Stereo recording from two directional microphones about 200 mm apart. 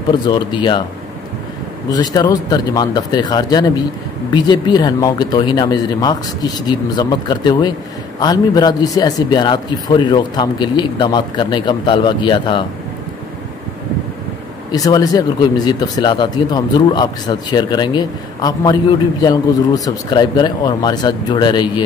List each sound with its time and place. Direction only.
0.3 s speech: 25° left (ahead or behind)
1.9 s speech: 20° left (ahead or behind)
14.7 s speech: 20° left (ahead or behind)